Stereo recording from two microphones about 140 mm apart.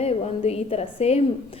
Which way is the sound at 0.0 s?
45° left (ahead or behind).